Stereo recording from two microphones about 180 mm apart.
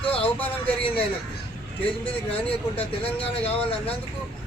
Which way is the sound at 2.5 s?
30° left (ahead or behind).